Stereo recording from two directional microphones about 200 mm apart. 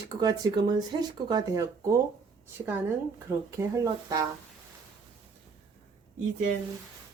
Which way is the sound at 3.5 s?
15° right (ahead or behind).